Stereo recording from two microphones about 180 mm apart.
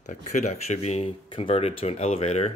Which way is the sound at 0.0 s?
40° left (ahead or behind).